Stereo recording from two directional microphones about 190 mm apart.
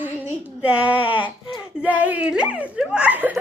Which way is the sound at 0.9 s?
25° left (ahead or behind).